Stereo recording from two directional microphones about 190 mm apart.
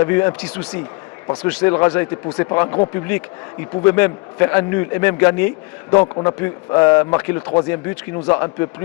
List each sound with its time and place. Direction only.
0.0 s a man's voice: 15° left (ahead or behind)